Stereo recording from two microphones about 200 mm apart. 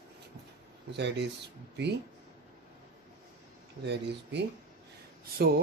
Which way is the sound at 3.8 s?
60° right (ahead or behind).